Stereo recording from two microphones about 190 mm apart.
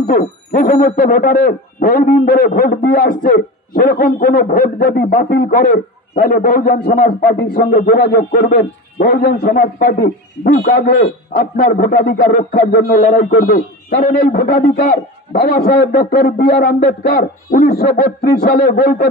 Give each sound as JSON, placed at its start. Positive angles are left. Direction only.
{"t": 0.0, "sound": "speech", "side_deg": 50}